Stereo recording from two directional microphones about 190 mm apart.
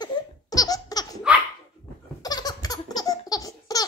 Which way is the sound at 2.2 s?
20° left (ahead or behind).